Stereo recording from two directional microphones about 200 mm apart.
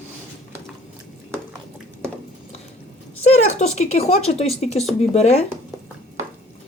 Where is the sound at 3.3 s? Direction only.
35° left (ahead or behind).